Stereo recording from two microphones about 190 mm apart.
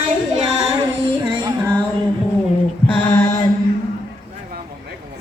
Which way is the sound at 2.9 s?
10° left (ahead or behind).